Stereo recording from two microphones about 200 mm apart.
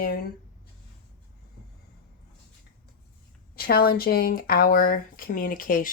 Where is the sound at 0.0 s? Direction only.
50° left (ahead or behind).